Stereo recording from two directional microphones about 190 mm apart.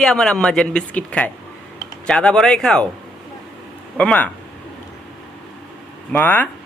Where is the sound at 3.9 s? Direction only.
5° left (ahead or behind).